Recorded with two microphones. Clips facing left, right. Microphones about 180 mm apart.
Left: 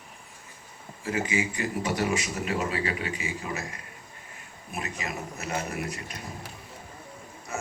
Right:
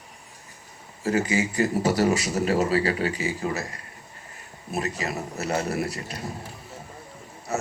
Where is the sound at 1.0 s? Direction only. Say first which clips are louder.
Right 5 dB; 40° right (ahead or behind).